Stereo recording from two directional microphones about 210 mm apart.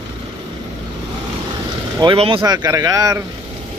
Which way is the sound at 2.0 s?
25° right (ahead or behind).